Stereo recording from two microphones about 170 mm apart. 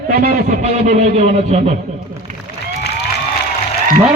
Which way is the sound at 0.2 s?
50° right (ahead or behind).